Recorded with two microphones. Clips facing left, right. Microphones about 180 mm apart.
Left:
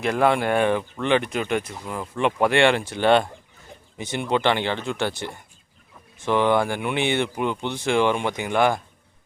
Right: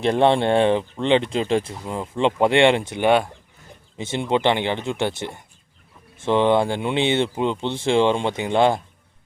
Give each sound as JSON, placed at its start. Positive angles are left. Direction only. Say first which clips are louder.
{"t": 0.0, "sound": "speech", "louder": "right 3 dB", "side_deg": -30}
{"t": 3.9, "sound": "speech", "louder": "right 2 dB", "side_deg": -25}